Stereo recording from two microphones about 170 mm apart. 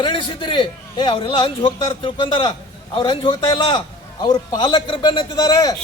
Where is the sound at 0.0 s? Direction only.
30° left (ahead or behind).